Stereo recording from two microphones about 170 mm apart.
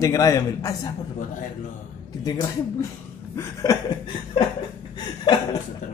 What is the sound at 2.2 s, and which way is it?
A man's voice, 25° left (ahead or behind).